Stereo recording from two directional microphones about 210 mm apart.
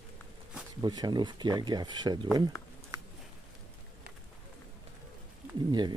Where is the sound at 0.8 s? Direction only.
20° right (ahead or behind).